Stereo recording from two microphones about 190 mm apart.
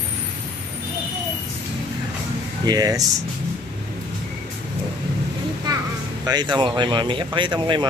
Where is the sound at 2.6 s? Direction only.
20° right (ahead or behind).